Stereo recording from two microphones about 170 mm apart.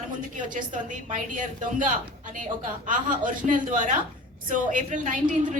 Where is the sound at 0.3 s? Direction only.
50° right (ahead or behind).